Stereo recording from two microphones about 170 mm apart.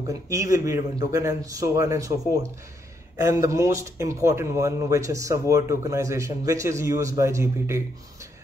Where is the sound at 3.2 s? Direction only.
15° right (ahead or behind).